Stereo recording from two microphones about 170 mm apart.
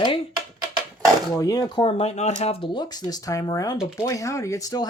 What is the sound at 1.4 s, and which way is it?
Speech, 20° left (ahead or behind).